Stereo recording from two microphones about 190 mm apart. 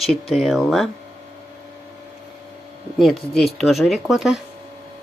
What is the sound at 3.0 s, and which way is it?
Speech, centre (ahead or behind).